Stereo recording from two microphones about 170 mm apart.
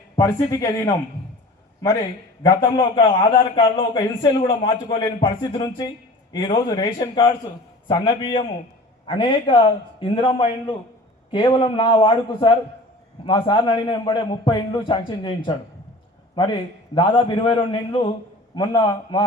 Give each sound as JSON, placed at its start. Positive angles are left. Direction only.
{"t": 0.2, "sound": "a man's voice", "side_deg": 20}
{"t": 2.4, "sound": "a man's voice", "side_deg": 25}